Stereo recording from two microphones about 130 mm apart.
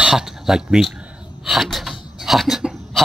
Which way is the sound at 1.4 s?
Centre (ahead or behind).